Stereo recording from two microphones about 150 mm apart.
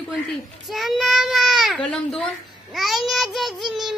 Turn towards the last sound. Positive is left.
turn(degrees=0)  # may be behind; listen again after turning